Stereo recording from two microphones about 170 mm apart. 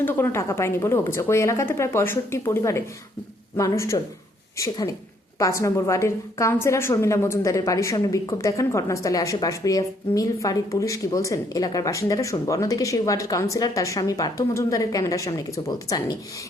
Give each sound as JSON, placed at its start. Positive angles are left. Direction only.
{"t": 0.0, "sound": "a woman's voice", "side_deg": 15}